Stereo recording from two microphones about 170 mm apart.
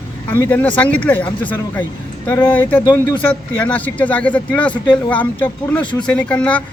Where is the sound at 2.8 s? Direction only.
20° left (ahead or behind).